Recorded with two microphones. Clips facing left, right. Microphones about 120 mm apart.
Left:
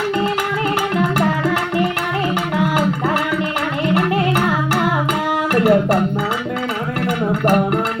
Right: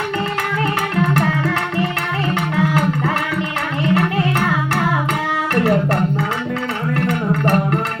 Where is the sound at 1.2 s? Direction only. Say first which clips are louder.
Left 1 dB; 15° left (ahead or behind).